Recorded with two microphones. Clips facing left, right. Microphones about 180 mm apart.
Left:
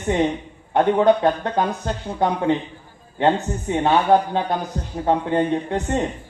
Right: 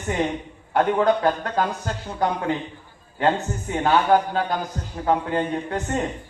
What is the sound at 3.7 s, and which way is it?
Speech, 25° left (ahead or behind).